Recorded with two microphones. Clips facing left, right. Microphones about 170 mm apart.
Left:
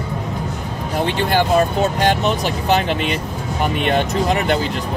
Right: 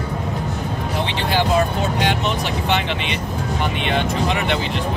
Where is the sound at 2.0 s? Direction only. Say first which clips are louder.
Left 3 dB; 40° left (ahead or behind).